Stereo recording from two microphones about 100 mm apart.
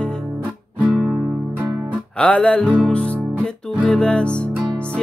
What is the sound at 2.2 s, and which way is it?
Music, 10° left (ahead or behind).